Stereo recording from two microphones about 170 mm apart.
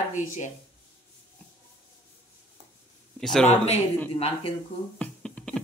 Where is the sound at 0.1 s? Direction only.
45° left (ahead or behind).